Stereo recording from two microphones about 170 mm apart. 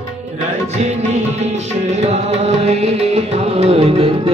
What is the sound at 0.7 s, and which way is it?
Music, 40° right (ahead or behind).